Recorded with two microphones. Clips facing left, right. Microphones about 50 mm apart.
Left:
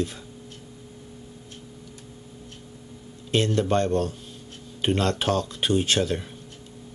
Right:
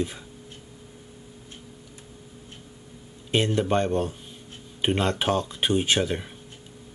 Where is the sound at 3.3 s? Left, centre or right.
Centre.